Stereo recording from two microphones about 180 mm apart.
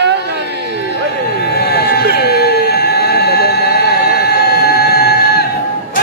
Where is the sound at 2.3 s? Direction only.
60° left (ahead or behind).